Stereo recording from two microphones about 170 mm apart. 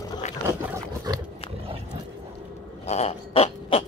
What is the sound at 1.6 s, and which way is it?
Dog, 35° right (ahead or behind).